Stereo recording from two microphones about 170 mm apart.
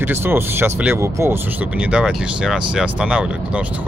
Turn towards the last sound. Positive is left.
turn(degrees=-5)  # may be behind; listen again after turning